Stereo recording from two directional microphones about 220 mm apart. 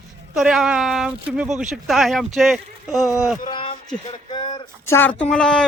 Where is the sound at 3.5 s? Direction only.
20° left (ahead or behind).